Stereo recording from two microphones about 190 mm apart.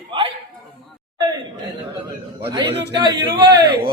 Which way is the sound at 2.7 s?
60° right (ahead or behind).